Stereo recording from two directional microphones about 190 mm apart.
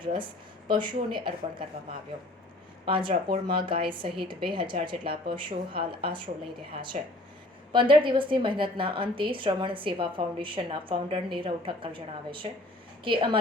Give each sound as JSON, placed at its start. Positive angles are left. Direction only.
{"t": 0.0, "sound": "a woman's voice", "side_deg": -25}
{"t": 2.8, "sound": "a woman's voice", "side_deg": -25}